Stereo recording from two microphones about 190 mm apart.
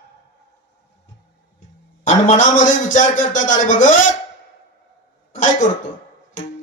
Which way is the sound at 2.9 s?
45° left (ahead or behind).